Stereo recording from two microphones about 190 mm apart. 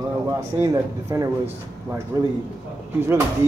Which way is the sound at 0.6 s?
15° right (ahead or behind).